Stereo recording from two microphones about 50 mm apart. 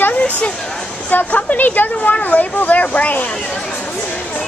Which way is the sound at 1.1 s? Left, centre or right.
Left.